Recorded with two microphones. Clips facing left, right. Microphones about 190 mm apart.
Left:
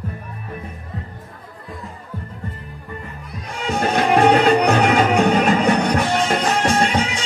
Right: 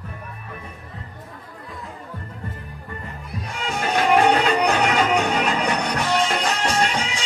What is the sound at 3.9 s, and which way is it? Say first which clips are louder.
Music: left 2 dB; 50° left (ahead or behind).